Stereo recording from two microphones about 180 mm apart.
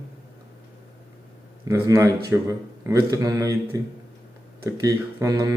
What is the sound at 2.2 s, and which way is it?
A man's voice, 20° right (ahead or behind).